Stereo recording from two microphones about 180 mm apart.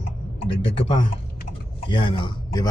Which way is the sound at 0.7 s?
30° left (ahead or behind).